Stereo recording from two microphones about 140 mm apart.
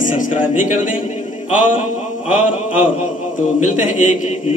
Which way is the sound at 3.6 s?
65° left (ahead or behind).